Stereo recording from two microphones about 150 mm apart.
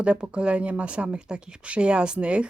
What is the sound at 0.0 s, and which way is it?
Speech, 5° right (ahead or behind).